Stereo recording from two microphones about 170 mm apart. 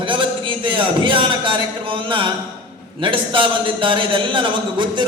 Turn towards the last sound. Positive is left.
turn(degrees=-30)  # may be behind; listen again after turning